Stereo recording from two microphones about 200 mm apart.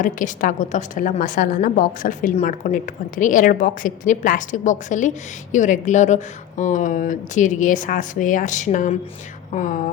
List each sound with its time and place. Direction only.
0.0 s a woman's voice: 40° left (ahead or behind)